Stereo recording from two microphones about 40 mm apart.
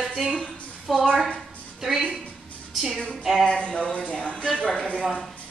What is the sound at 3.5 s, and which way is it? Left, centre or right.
Speech, left.